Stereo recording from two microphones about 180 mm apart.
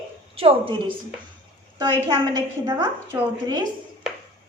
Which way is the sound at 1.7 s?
20° right (ahead or behind).